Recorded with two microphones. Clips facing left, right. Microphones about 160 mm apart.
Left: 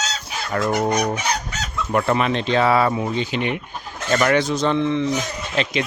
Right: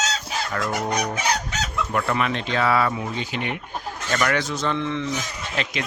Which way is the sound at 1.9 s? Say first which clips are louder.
Left 5 dB; 25° left (ahead or behind).